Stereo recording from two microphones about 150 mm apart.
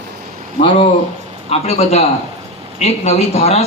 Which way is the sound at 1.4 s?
45° left (ahead or behind).